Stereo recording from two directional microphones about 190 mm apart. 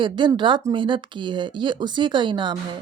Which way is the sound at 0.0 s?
25° right (ahead or behind).